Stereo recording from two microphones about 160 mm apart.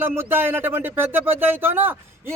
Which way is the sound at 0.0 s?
15° right (ahead or behind).